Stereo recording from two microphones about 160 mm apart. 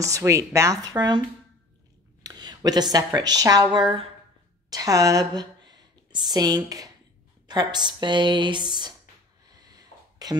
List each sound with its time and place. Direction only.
0.0 s speech: 20° right (ahead or behind)
2.2 s speech: 25° right (ahead or behind)
9.5 s a sound: 25° right (ahead or behind)